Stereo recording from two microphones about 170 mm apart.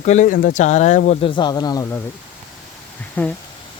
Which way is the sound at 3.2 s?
10° left (ahead or behind).